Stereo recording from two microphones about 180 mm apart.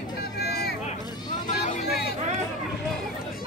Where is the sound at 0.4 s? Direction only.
60° left (ahead or behind).